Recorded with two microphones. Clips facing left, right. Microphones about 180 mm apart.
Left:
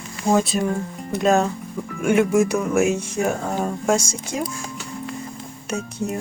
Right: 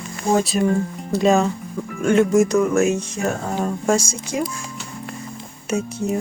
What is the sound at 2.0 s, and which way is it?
Music, 10° left (ahead or behind).